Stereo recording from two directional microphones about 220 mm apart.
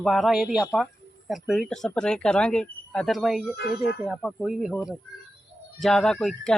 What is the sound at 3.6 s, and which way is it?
Speech, 50° left (ahead or behind).